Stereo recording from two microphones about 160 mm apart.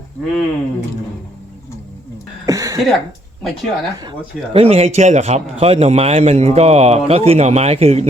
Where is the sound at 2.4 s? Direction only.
20° right (ahead or behind).